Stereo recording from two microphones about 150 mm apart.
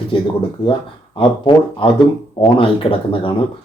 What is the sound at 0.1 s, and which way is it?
Speech, 35° left (ahead or behind).